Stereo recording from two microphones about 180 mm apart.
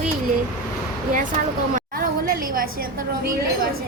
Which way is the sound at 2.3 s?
55° right (ahead or behind).